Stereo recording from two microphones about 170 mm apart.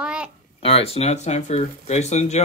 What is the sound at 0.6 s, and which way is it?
Speech, 35° left (ahead or behind).